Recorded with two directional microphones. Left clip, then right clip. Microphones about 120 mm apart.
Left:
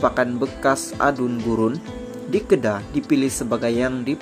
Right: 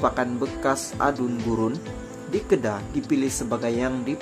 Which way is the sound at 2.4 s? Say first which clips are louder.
Left 4 dB; 30° left (ahead or behind).